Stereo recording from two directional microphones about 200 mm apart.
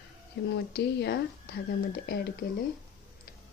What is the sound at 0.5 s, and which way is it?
A woman's voice, 55° left (ahead or behind).